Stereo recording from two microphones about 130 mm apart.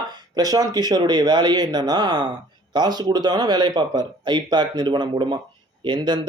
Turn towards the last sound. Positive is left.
turn(degrees=-35)  # may be behind; listen again after turning